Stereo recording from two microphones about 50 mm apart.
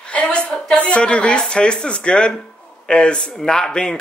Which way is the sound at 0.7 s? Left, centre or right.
Left.